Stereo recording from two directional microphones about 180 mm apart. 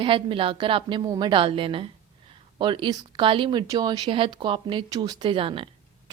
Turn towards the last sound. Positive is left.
turn(degrees=-30)  # may be behind; listen again after turning